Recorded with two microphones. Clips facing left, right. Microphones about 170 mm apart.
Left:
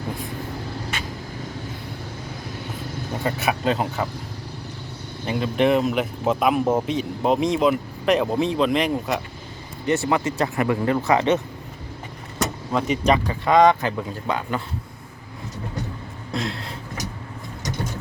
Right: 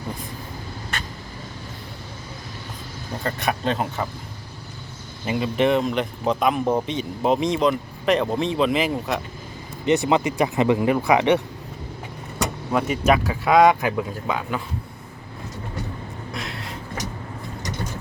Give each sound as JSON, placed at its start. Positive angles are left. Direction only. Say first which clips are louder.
{"t": 3.2, "sound": "speech", "louder": "left 1 dB", "side_deg": 5}
{"t": 5.2, "sound": "speech", "louder": "even", "side_deg": -5}
{"t": 9.8, "sound": "speech", "louder": "right 2 dB", "side_deg": -20}